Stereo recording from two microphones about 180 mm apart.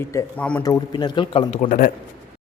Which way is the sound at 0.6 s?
20° left (ahead or behind).